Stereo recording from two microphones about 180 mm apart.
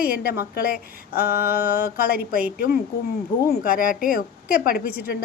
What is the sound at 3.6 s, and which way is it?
A woman's voice, 50° left (ahead or behind).